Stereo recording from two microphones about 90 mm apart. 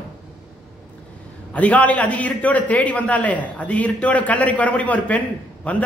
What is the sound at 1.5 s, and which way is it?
A man's voice, 15° left (ahead or behind).